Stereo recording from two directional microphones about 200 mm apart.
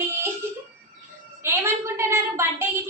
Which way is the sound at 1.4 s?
15° right (ahead or behind).